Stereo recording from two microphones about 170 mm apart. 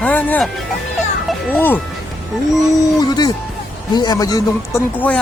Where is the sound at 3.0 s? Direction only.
25° left (ahead or behind).